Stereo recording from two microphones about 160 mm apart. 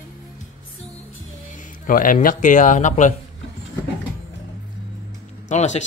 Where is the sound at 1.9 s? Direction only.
60° left (ahead or behind).